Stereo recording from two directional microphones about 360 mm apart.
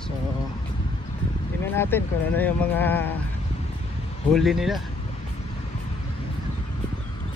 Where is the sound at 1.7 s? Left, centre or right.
Centre.